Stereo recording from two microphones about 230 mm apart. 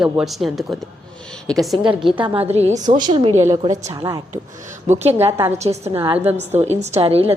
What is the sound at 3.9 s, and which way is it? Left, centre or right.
Speech, centre.